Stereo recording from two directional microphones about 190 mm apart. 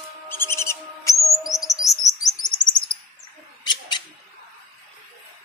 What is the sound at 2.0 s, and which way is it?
Chirp, 20° left (ahead or behind).